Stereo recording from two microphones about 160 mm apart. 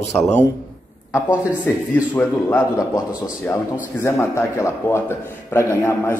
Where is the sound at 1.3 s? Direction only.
10° right (ahead or behind).